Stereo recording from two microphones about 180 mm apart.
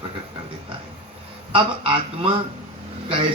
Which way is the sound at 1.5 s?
30° right (ahead or behind).